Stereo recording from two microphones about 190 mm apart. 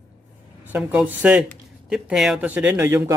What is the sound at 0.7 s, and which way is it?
Speech, 5° right (ahead or behind).